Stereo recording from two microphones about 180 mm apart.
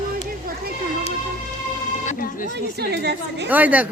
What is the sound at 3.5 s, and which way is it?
Speech, 10° right (ahead or behind).